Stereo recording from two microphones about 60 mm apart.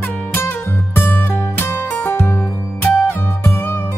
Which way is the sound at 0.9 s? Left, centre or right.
Left.